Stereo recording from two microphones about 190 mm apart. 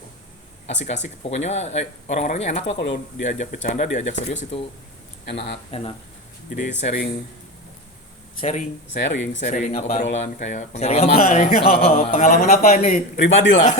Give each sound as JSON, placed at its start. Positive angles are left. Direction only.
{"t": 0.9, "sound": "speech", "side_deg": 35}
{"t": 2.6, "sound": "speech", "side_deg": 70}
{"t": 3.2, "sound": "speech", "side_deg": 40}
{"t": 5.3, "sound": "speech", "side_deg": 65}
{"t": 6.7, "sound": "speech", "side_deg": 40}
{"t": 8.4, "sound": "speech", "side_deg": 35}
{"t": 13.2, "sound": "speech", "side_deg": 70}